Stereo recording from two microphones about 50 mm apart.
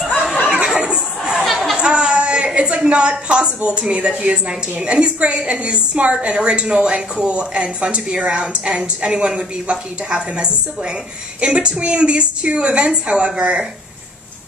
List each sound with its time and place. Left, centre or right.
0.7 s a sound: centre
1.4 s chatter: centre
1.8 s a woman's voice: centre